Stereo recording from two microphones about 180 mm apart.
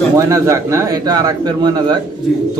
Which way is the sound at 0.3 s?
15° right (ahead or behind).